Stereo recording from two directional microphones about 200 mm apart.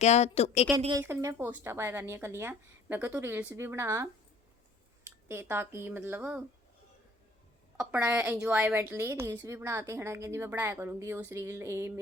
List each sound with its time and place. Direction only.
0.0 s a woman's voice: 35° left (ahead or behind)
0.9 s a woman's voice: 15° right (ahead or behind)
7.8 s a woman's voice: 5° right (ahead or behind)